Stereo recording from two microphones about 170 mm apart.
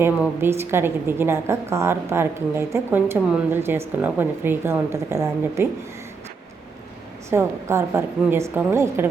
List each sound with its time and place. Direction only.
0.0 s a woman's voice: 15° right (ahead or behind)
7.3 s a woman's voice: 15° right (ahead or behind)